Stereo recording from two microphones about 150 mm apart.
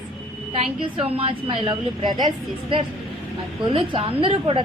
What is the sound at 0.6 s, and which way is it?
A woman's voice, 40° right (ahead or behind).